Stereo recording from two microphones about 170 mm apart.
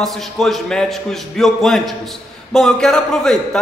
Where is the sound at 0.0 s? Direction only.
Centre (ahead or behind).